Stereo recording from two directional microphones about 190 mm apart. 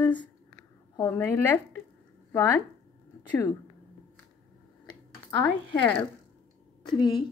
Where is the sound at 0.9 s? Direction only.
10° left (ahead or behind).